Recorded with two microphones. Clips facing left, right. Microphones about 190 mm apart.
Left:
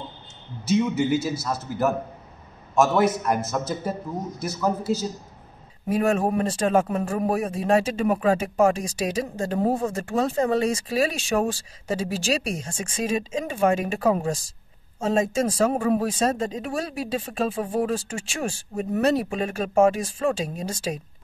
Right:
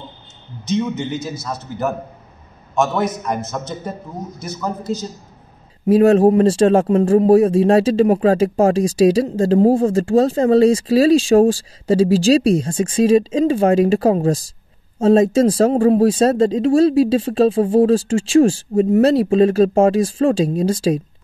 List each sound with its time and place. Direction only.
0.7 s a man's voice: 5° left (ahead or behind)
5.9 s speech: 35° right (ahead or behind)